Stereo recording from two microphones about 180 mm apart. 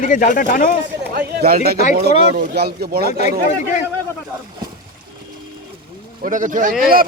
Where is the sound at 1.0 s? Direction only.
60° right (ahead or behind).